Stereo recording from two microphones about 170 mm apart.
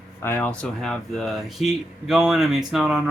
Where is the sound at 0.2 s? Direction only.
15° left (ahead or behind).